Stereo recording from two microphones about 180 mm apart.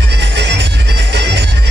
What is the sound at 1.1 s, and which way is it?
Music, 70° right (ahead or behind).